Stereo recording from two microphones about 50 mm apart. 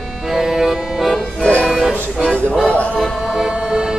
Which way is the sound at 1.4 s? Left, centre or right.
Left.